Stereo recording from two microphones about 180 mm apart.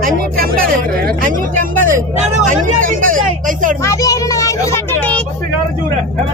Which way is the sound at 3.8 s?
15° left (ahead or behind).